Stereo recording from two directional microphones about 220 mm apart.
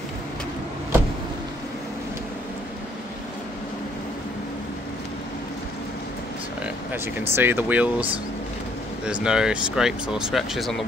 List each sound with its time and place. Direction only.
6.9 s speech: 10° right (ahead or behind)